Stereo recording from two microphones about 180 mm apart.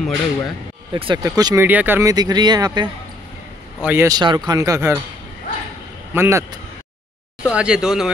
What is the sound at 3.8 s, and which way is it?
Speech, 10° right (ahead or behind).